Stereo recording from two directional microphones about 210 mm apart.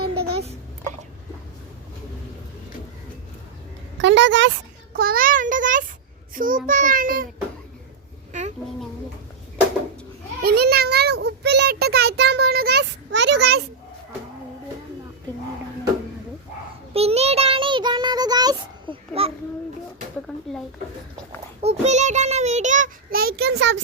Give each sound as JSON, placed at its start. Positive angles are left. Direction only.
{"t": 4.0, "sound": "a woman's voice", "side_deg": -60}
{"t": 4.9, "sound": "child singing", "side_deg": -45}
{"t": 8.3, "sound": "a sound", "side_deg": -35}
{"t": 10.4, "sound": "child singing", "side_deg": -50}
{"t": 16.9, "sound": "child singing", "side_deg": -30}
{"t": 20.3, "sound": "speech", "side_deg": 5}
{"t": 21.6, "sound": "child singing", "side_deg": -30}